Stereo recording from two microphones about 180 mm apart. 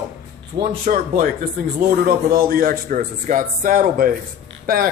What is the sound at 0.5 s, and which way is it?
A man's voice, 50° right (ahead or behind).